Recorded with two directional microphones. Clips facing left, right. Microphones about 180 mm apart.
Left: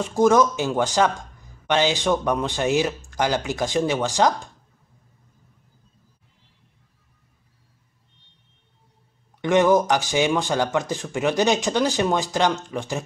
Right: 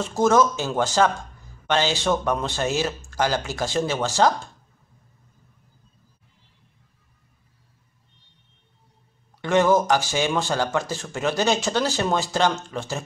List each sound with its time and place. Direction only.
0.0 s speech: 15° left (ahead or behind)
9.4 s speech: 15° left (ahead or behind)